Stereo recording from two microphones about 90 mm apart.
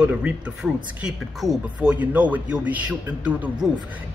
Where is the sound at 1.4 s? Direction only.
Centre (ahead or behind).